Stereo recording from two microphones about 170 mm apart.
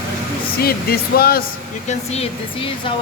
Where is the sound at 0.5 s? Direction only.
65° left (ahead or behind).